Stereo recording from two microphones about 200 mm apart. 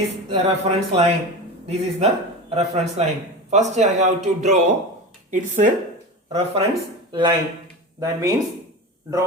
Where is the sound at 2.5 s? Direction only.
35° right (ahead or behind).